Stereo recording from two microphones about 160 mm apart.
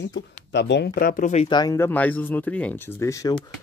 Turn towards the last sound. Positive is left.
turn(degrees=20)  # may be behind; listen again after turning